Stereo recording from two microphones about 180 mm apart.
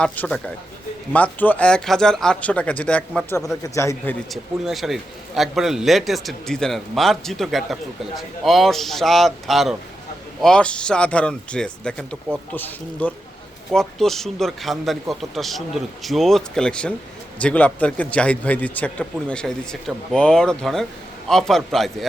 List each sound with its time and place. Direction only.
0.0 s a man's voice: 5° left (ahead or behind)
4.3 s a man's voice: centre (ahead or behind)